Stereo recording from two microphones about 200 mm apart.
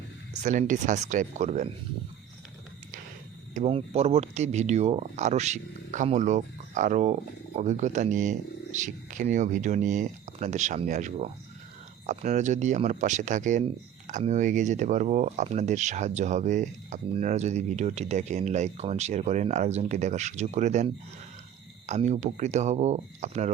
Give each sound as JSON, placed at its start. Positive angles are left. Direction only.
{"t": 0.4, "sound": "speech", "side_deg": -40}
{"t": 3.5, "sound": "speech", "side_deg": -30}